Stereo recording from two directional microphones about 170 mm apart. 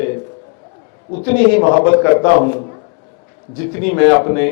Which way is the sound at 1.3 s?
15° left (ahead or behind).